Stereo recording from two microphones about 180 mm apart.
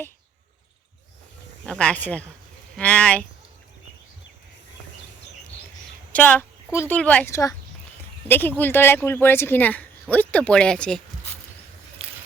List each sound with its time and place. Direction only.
1.6 s speech: 5° left (ahead or behind)
6.1 s speech: 5° left (ahead or behind)
12.0 s a sound: 35° right (ahead or behind)